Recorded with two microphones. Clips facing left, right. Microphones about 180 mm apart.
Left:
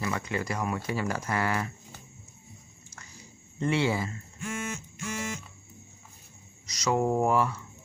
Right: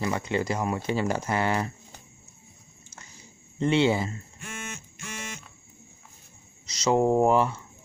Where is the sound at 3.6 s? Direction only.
25° right (ahead or behind).